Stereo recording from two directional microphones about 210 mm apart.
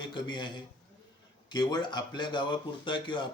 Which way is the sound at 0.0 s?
20° left (ahead or behind).